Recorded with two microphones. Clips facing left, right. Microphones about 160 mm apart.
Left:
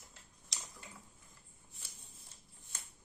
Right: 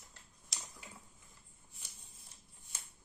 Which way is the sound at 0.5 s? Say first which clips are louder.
Even; centre (ahead or behind).